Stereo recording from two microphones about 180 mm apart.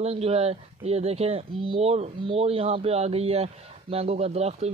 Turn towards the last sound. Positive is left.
turn(degrees=-35)  # may be behind; listen again after turning